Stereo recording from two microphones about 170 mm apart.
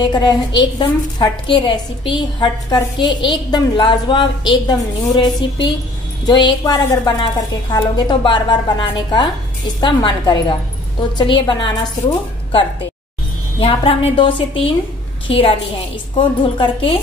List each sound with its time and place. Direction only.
0.1 s a woman's voice: 25° left (ahead or behind)
13.6 s a woman's voice: 35° left (ahead or behind)